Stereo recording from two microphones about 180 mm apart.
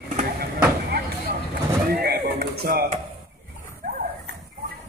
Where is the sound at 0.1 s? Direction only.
50° right (ahead or behind).